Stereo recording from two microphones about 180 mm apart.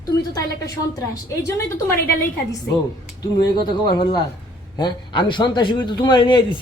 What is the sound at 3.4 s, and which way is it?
A man's voice, 25° left (ahead or behind).